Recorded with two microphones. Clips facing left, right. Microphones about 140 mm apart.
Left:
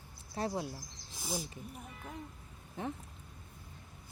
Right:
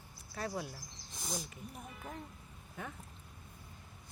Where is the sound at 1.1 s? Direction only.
5° left (ahead or behind).